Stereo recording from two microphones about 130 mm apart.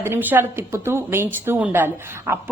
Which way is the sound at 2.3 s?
15° right (ahead or behind).